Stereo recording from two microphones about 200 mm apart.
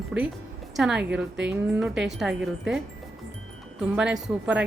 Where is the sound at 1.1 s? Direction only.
60° right (ahead or behind).